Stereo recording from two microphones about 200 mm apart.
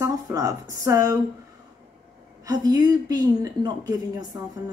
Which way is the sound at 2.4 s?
20° right (ahead or behind).